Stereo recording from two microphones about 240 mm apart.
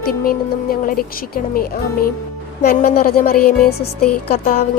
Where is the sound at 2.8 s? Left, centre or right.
Left.